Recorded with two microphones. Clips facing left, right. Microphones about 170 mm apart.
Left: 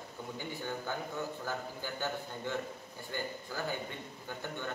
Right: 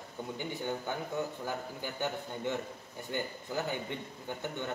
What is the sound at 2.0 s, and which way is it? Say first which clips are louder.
A man's voice: right 4 dB; 20° right (ahead or behind).